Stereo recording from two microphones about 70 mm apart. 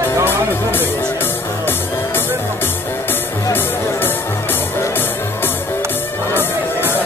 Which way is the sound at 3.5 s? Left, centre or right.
Left.